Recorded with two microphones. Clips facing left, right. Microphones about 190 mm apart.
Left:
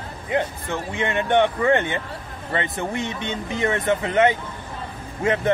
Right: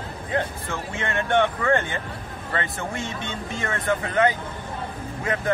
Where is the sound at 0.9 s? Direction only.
15° left (ahead or behind).